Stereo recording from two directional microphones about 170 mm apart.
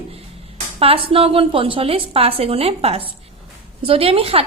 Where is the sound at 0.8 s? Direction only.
35° right (ahead or behind).